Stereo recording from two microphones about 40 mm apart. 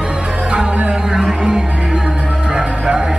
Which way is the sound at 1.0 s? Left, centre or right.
Centre.